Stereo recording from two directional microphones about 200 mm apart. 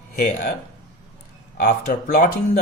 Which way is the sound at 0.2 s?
40° left (ahead or behind).